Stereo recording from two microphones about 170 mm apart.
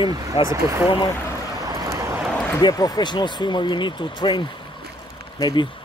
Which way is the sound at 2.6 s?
20° left (ahead or behind).